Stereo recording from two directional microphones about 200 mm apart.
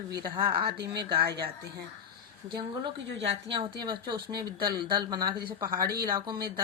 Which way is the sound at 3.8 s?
25° right (ahead or behind).